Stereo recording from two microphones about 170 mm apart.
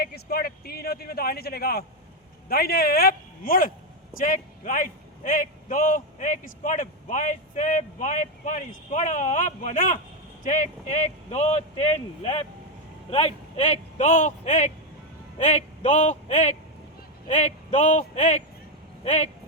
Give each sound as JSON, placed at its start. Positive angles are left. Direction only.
{"t": 0.0, "sound": "a man's voice", "side_deg": 65}